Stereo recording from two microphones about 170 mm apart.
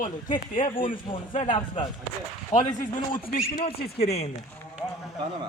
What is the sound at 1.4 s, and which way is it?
A man's voice, 45° left (ahead or behind).